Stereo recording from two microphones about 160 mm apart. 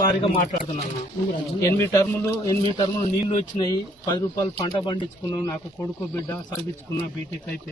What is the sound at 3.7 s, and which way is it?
Speech, 25° left (ahead or behind).